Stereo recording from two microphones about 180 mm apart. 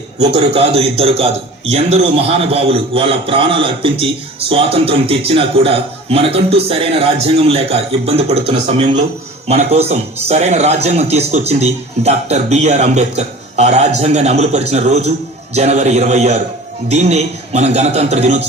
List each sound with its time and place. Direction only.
0.2 s a man's voice: 35° right (ahead or behind)